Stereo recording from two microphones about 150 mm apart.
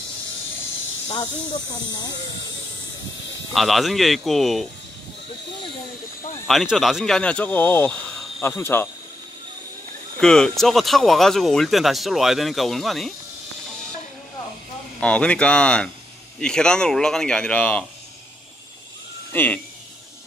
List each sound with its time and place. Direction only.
1.0 s speech: 30° left (ahead or behind)
3.5 s speech: centre (ahead or behind)
6.4 s speech: centre (ahead or behind); by 8.8 s 15° left (ahead or behind)
10.2 s speech: 5° left (ahead or behind)
15.0 s speech: 10° left (ahead or behind)
19.3 s speech: 15° left (ahead or behind)